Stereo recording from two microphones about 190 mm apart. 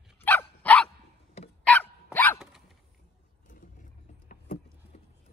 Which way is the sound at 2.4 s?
Centre (ahead or behind).